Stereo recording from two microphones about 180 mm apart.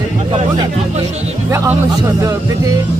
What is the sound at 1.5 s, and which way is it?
Speech, 15° right (ahead or behind).